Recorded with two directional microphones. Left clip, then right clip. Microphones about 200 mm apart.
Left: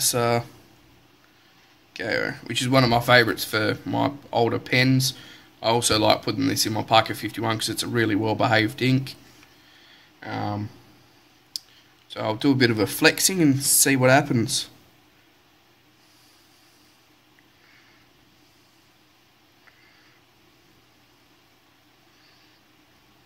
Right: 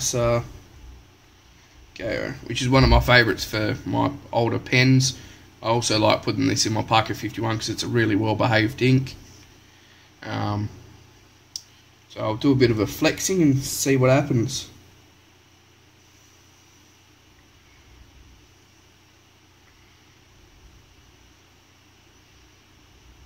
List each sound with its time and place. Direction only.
0.0 s speech: 25° left (ahead or behind)
2.0 s speech: 25° left (ahead or behind)
10.2 s speech: 10° left (ahead or behind)
12.1 s speech: 25° left (ahead or behind)